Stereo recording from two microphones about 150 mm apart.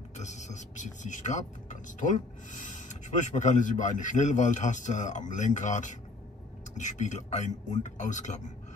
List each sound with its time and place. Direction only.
0.2 s speech: 50° left (ahead or behind)